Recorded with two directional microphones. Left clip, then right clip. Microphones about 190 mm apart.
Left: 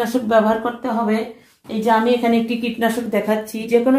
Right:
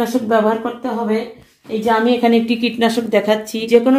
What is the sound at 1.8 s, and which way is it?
Speech, 40° right (ahead or behind).